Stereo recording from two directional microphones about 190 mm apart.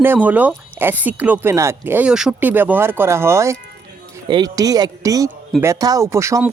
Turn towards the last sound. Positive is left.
turn(degrees=-15)  # may be behind; listen again after turning